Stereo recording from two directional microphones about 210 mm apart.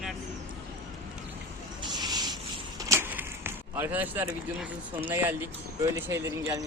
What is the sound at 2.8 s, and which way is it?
Speech, 15° right (ahead or behind).